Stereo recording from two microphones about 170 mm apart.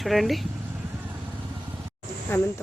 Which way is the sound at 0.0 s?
Centre (ahead or behind).